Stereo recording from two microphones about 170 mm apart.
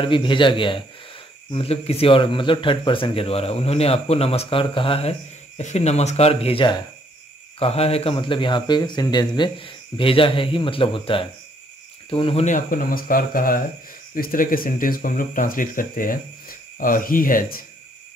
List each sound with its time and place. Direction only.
0.0 s a man's voice: 30° left (ahead or behind)
12.4 s speech: 50° left (ahead or behind)